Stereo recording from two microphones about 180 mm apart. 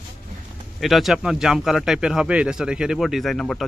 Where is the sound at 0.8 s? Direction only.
Centre (ahead or behind).